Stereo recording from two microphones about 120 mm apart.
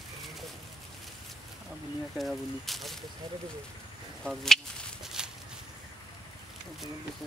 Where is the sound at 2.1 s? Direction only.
Centre (ahead or behind).